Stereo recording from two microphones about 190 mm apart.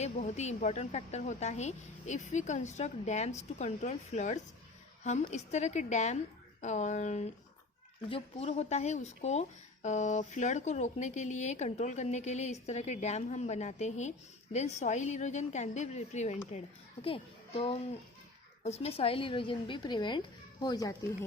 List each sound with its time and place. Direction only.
0.0 s a child's voice: 35° left (ahead or behind); by 20.9 s 20° left (ahead or behind)